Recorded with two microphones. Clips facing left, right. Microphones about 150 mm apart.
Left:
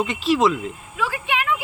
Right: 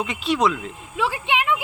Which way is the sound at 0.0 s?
Centre (ahead or behind).